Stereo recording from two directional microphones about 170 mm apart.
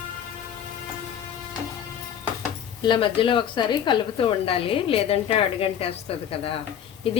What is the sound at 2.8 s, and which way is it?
A woman's voice, 30° left (ahead or behind).